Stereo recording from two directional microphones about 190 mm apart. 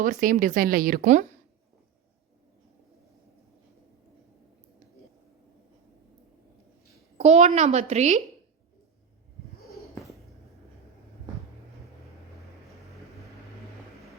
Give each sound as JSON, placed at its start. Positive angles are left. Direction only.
{"t": 0.0, "sound": "speech", "side_deg": -45}
{"t": 7.2, "sound": "a woman's voice", "side_deg": -35}